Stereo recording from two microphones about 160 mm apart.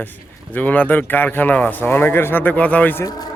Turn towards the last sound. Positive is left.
turn(degrees=10)  # may be behind; listen again after turning